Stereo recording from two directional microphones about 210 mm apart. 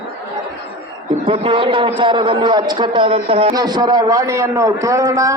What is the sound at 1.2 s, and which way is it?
A man's voice, 25° right (ahead or behind).